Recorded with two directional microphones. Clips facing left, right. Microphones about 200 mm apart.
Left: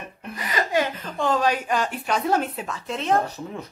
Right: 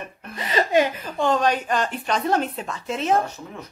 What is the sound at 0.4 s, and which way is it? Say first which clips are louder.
Chuckle: right 4 dB; 25° right (ahead or behind).